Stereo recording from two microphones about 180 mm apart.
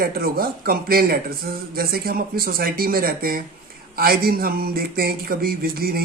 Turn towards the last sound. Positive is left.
turn(degrees=-55)  # may be behind; listen again after turning